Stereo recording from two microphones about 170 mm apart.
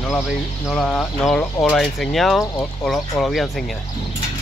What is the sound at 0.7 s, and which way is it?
Speech, centre (ahead or behind).